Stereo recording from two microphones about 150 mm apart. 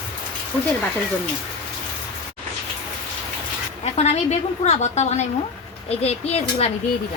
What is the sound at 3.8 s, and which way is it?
A woman's voice, 45° left (ahead or behind).